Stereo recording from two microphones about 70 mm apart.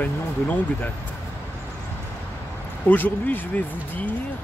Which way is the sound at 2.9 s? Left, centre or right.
Left.